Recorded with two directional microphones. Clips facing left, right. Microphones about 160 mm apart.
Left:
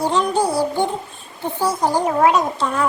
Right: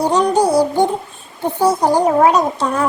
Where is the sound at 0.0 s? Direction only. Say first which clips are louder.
Right 4 dB; 40° right (ahead or behind).